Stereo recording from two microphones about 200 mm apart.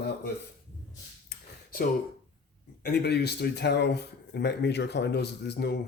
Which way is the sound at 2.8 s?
55° left (ahead or behind).